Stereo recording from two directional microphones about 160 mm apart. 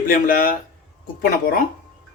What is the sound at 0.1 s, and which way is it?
Speech, 65° left (ahead or behind).